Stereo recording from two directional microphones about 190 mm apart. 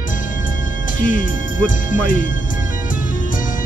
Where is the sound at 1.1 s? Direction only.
45° left (ahead or behind).